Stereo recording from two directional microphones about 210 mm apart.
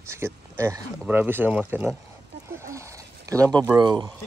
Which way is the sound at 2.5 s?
15° right (ahead or behind).